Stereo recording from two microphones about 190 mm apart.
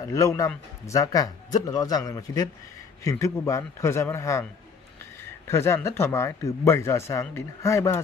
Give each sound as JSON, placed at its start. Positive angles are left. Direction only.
{"t": 0.0, "sound": "a man's voice", "side_deg": 15}
{"t": 5.5, "sound": "speech", "side_deg": 15}